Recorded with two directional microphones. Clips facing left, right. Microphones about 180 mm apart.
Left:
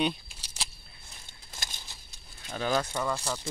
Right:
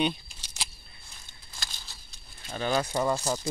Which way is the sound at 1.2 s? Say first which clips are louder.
Left 1 dB; 20° left (ahead or behind).